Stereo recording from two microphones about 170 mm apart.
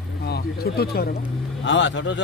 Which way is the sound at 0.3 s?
65° left (ahead or behind).